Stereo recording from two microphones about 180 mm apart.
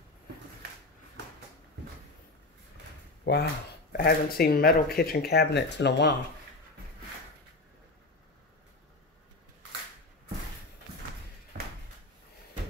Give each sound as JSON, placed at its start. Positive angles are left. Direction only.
{"t": 3.3, "sound": "speech", "side_deg": 65}
{"t": 3.9, "sound": "speech", "side_deg": 55}